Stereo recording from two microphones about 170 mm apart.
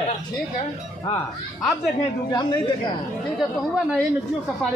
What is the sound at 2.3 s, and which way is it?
Speech, 25° left (ahead or behind).